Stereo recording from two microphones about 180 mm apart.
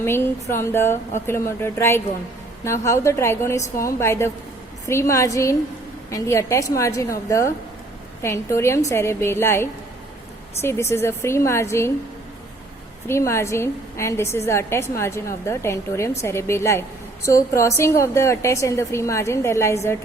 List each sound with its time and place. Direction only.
0.0 s a woman's voice: 15° left (ahead or behind)
13.1 s a woman's voice: 15° left (ahead or behind)